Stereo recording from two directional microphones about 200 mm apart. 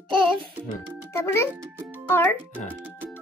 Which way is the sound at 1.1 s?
15° left (ahead or behind).